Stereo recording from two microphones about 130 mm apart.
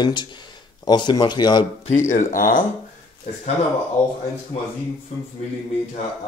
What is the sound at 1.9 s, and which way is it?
Speech, 75° left (ahead or behind).